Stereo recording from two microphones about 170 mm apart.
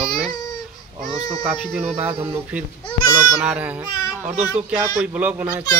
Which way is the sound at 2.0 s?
10° right (ahead or behind).